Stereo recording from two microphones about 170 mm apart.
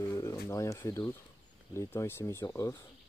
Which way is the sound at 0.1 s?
20° left (ahead or behind).